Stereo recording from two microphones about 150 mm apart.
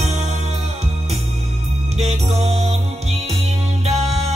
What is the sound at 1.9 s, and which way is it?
Music, 45° right (ahead or behind).